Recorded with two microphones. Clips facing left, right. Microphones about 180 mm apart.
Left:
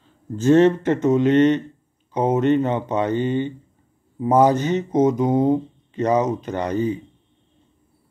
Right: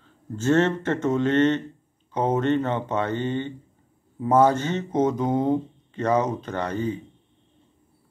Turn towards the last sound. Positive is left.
turn(degrees=15)  # may be behind; listen again after turning